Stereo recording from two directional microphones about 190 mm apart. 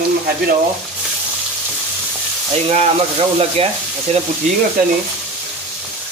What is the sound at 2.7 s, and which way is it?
Speech, 30° right (ahead or behind).